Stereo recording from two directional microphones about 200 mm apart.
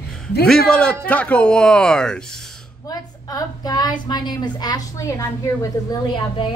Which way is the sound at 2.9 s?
20° left (ahead or behind).